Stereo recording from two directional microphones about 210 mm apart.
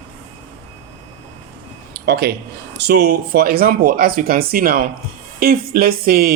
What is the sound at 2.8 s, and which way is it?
Speech, 50° right (ahead or behind).